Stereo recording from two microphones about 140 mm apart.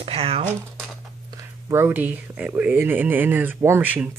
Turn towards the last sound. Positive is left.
turn(degrees=-10)  # may be behind; listen again after turning